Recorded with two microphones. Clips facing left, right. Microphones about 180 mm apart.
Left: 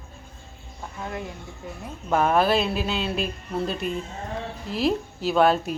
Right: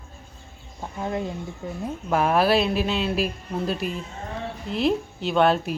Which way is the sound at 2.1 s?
5° right (ahead or behind).